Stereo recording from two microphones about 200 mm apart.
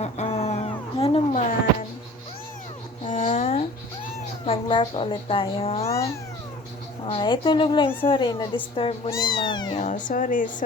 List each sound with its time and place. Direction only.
0.0 s cat: 35° left (ahead or behind)
3.0 s a sound: 40° left (ahead or behind)
4.4 s a woman's voice: 25° left (ahead or behind)
5.9 s cat: 15° left (ahead or behind)
7.0 s a woman's voice: 25° left (ahead or behind)
9.7 s speech: 40° left (ahead or behind)